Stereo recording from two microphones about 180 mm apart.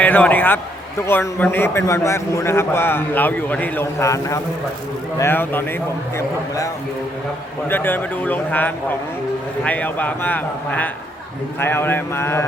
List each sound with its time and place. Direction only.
0.0 s a man's voice: 10° left (ahead or behind)
7.7 s a man's voice: 10° left (ahead or behind)